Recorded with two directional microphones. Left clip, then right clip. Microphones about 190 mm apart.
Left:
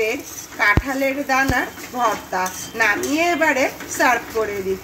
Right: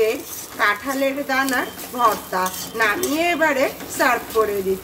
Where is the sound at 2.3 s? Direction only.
Centre (ahead or behind).